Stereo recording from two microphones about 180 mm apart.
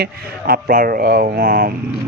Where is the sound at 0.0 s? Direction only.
60° right (ahead or behind).